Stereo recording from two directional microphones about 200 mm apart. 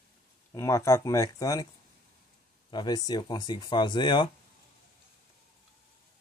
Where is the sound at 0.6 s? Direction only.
15° left (ahead or behind).